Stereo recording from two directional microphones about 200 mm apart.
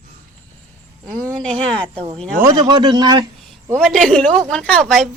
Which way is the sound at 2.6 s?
20° right (ahead or behind).